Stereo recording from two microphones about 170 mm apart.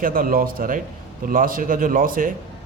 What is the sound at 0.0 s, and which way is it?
Speech, 55° right (ahead or behind).